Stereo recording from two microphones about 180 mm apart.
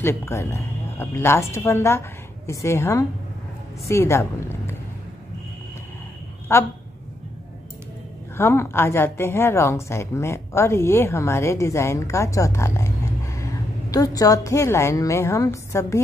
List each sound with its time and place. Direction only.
0.0 s a woman's voice: 15° left (ahead or behind)
6.5 s a woman's voice: 15° left (ahead or behind)
8.4 s a woman's voice: 15° left (ahead or behind)